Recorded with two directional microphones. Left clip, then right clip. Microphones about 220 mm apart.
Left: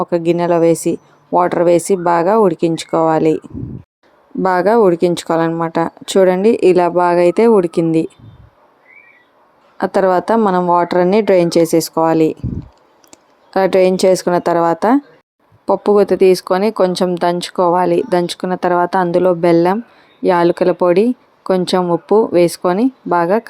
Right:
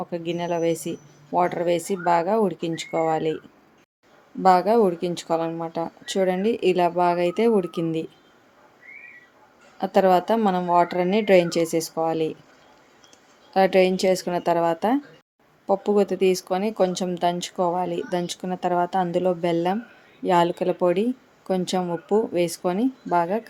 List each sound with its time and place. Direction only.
0.0 s speech: 25° left (ahead or behind)
4.4 s speech: 30° left (ahead or behind)
9.7 s speech: 25° left (ahead or behind)
13.1 s a sound: 30° left (ahead or behind)
14.3 s speech: 25° left (ahead or behind)